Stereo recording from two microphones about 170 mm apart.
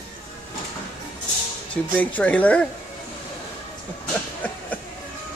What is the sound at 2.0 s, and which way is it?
Speech, 10° left (ahead or behind).